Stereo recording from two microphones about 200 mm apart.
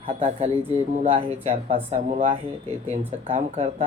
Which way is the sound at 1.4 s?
30° right (ahead or behind).